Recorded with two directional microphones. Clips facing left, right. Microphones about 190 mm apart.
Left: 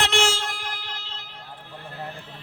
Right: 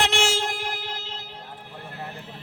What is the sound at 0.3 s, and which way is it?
Music, 20° right (ahead or behind).